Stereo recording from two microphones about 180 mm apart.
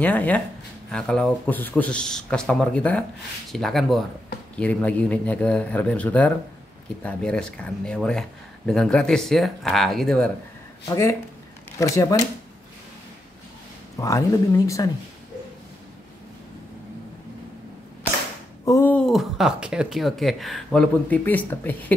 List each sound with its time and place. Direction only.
0.0 s speech: 10° left (ahead or behind)
10.9 s speech: 15° left (ahead or behind)
13.9 s speech: 15° left (ahead or behind)
18.7 s speech: 10° left (ahead or behind)